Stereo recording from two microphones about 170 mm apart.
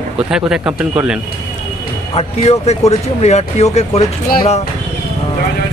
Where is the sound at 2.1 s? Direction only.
40° left (ahead or behind).